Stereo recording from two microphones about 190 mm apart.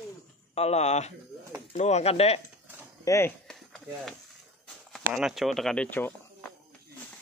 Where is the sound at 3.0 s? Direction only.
15° left (ahead or behind).